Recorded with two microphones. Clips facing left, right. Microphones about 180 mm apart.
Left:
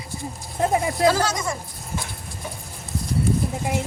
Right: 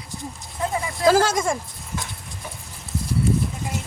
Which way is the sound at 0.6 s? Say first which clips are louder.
Left 5 dB; 50° left (ahead or behind).